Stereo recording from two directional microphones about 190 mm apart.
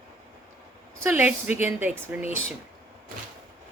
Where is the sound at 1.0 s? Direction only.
10° right (ahead or behind).